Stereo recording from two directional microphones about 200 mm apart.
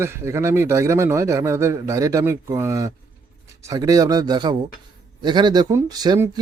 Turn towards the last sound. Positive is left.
turn(degrees=-20)  # may be behind; listen again after turning